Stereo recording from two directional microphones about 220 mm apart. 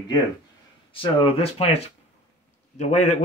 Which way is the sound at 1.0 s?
25° left (ahead or behind).